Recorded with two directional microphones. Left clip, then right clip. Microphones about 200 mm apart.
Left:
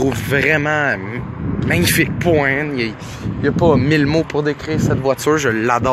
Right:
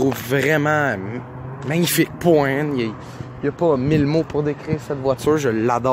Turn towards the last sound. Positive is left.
turn(degrees=-5)  # may be behind; listen again after turning